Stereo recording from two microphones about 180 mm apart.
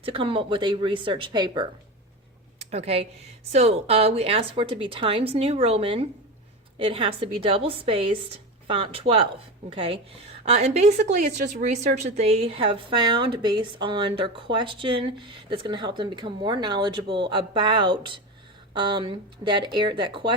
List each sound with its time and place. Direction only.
0.0 s a woman's voice: 30° right (ahead or behind)
2.6 s a woman's voice: 35° right (ahead or behind)